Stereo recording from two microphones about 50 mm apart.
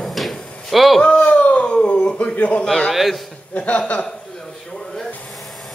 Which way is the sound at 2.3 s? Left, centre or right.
Left.